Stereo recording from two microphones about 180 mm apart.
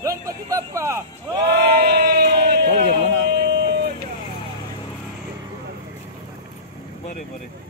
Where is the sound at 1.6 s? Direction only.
60° right (ahead or behind).